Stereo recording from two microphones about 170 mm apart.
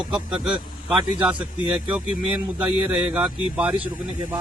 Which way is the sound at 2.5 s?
10° right (ahead or behind).